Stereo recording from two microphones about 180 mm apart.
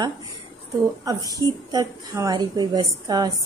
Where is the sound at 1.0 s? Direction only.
20° right (ahead or behind).